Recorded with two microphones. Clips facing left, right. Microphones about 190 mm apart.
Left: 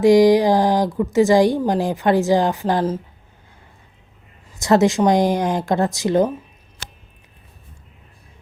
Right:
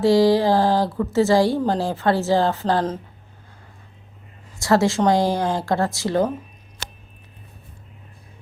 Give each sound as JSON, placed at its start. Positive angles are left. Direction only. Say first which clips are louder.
{"t": 0.0, "sound": "speech", "louder": "left 4 dB", "side_deg": 15}
{"t": 4.5, "sound": "speech", "louder": "left 3 dB", "side_deg": 20}